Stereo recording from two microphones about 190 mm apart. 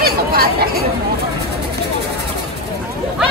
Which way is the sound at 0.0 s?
55° right (ahead or behind).